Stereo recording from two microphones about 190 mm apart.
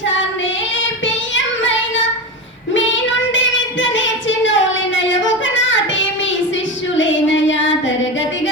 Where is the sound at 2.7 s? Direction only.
80° left.